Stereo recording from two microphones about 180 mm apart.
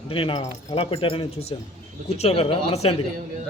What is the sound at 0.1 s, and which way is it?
Speech, 30° left (ahead or behind).